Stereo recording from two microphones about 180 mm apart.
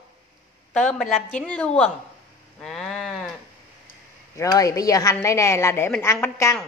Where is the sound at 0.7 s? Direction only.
5° left (ahead or behind).